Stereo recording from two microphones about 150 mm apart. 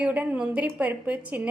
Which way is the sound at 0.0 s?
10° right (ahead or behind).